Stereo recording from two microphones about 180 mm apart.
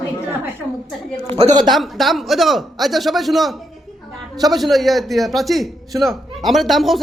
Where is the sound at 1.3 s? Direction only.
30° right (ahead or behind).